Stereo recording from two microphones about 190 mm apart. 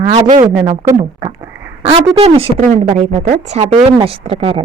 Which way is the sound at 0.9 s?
20° right (ahead or behind).